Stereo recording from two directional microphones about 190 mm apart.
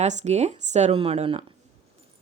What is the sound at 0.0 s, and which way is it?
Speech, 40° right (ahead or behind).